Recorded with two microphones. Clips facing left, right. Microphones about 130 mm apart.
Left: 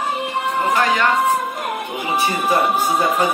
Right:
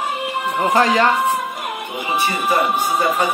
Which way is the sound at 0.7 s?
35° right (ahead or behind).